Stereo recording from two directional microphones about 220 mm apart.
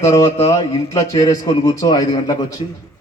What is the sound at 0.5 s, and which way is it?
Speech, 15° left (ahead or behind).